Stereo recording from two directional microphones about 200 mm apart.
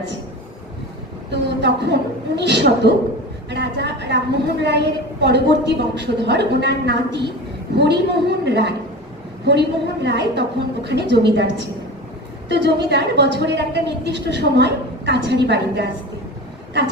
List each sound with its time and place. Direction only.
1.3 s a woman's voice: 60° right (ahead or behind)